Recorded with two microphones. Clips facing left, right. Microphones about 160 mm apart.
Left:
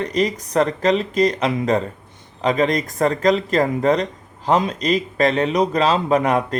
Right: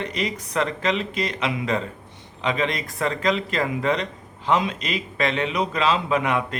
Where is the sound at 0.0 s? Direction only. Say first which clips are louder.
Left 7 dB; 40° left (ahead or behind).